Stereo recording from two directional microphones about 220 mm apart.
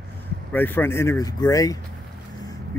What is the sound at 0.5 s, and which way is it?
Speech, 10° left (ahead or behind).